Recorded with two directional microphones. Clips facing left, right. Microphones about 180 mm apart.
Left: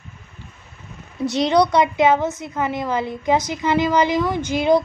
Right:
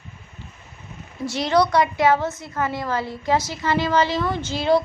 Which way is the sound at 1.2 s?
20° left (ahead or behind).